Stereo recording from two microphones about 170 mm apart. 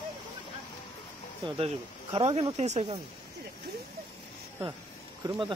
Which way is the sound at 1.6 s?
35° right (ahead or behind).